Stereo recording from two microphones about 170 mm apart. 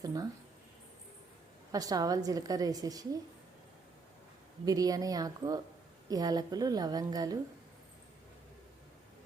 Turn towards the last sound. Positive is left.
turn(degrees=-20)  # may be behind; listen again after turning